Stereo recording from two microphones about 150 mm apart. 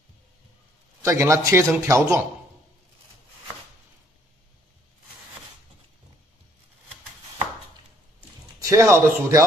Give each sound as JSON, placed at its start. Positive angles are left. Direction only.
{"t": 1.0, "sound": "speech", "side_deg": -20}
{"t": 8.6, "sound": "speech", "side_deg": -20}